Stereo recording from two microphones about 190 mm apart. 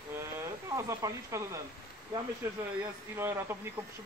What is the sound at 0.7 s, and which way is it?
Speech, 15° right (ahead or behind).